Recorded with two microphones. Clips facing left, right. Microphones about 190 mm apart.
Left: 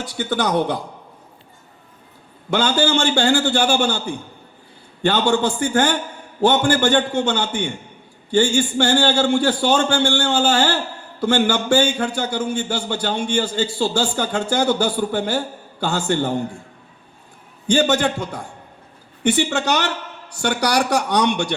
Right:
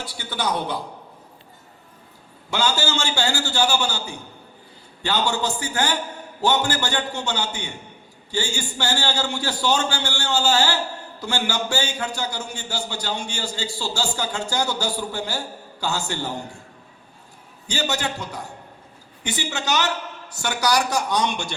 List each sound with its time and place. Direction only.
0.0 s a man's voice: 50° left (ahead or behind)
2.5 s a man's voice: 55° left (ahead or behind)
5.3 s a man's voice: 50° left (ahead or behind)
17.7 s a man's voice: 50° left (ahead or behind)